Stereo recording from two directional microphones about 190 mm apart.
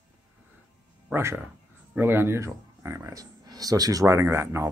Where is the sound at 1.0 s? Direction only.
10° right (ahead or behind).